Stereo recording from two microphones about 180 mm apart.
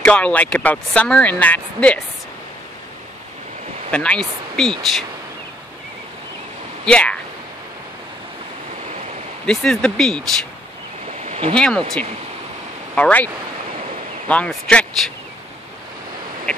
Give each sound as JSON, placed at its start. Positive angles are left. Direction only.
{"t": 0.0, "sound": "speech", "side_deg": 5}
{"t": 3.9, "sound": "speech", "side_deg": 5}
{"t": 6.9, "sound": "speech", "side_deg": 5}
{"t": 9.5, "sound": "speech", "side_deg": 5}
{"t": 11.1, "sound": "a sound", "side_deg": -35}
{"t": 11.5, "sound": "speech", "side_deg": 5}
{"t": 12.9, "sound": "speech", "side_deg": 10}
{"t": 16.5, "sound": "a sound", "side_deg": 5}